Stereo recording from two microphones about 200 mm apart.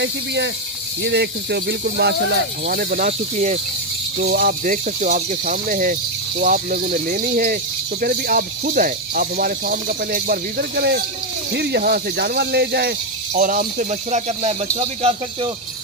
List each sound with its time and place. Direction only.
0.0 s cricket: 60° right (ahead or behind); by 3.5 s 35° right (ahead or behind)
4.2 s speech: 50° right (ahead or behind); by 15.5 s 25° right (ahead or behind)